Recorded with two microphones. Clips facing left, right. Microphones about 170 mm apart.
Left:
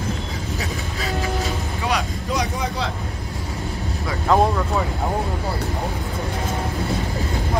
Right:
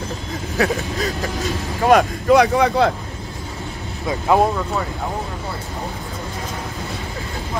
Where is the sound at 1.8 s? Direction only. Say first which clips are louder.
Right 12 dB; 50° right (ahead or behind); by 2.9 s 65° right (ahead or behind).